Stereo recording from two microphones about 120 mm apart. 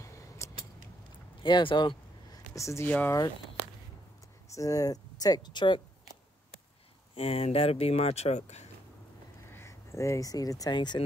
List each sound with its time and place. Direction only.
0.0 s a sound: 25° left (ahead or behind)
1.4 s speech: 45° left (ahead or behind)
2.3 s speech: 25° left (ahead or behind)
4.5 s speech: 30° left (ahead or behind)
7.2 s speech: 60° left (ahead or behind)
9.5 s speech: 20° left (ahead or behind); by 11.1 s 40° left (ahead or behind)